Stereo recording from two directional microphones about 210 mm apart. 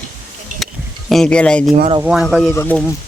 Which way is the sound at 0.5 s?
40° right (ahead or behind).